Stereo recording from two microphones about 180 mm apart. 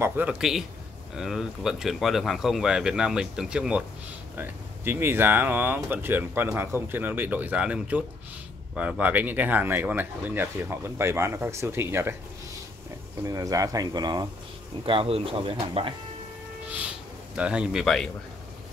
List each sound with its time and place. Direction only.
0.0 s speech: 10° right (ahead or behind)
13.2 s speech: 20° right (ahead or behind)
17.4 s speech: 5° right (ahead or behind)